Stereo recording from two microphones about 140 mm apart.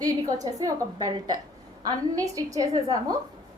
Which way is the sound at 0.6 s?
25° right (ahead or behind).